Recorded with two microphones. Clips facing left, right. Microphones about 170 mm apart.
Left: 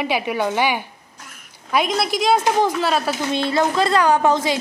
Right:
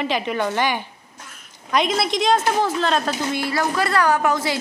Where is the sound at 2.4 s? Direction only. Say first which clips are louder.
Left 2 dB; 15° left (ahead or behind).